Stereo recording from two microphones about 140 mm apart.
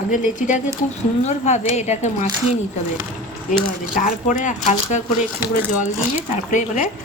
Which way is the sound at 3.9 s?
70° left (ahead or behind).